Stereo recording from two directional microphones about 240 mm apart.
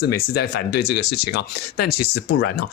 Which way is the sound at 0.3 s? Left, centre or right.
Left.